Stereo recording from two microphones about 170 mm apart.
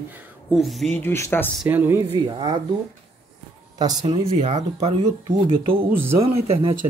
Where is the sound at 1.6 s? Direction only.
10° right (ahead or behind).